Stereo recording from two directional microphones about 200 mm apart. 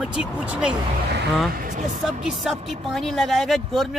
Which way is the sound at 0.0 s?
5° right (ahead or behind).